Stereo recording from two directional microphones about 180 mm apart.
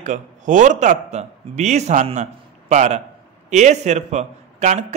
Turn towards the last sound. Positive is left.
turn(degrees=-40)  # may be behind; listen again after turning